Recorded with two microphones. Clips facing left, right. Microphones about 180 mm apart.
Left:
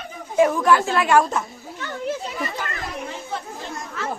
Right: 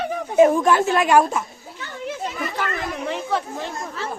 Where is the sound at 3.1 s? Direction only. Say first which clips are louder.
Right 7 dB; 70° right (ahead or behind).